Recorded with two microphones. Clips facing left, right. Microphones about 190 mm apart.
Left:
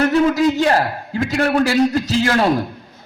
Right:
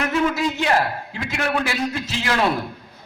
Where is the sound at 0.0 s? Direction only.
35° left (ahead or behind).